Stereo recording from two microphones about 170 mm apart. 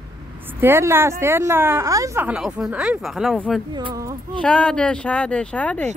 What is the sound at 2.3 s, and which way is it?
Speech, 5° right (ahead or behind).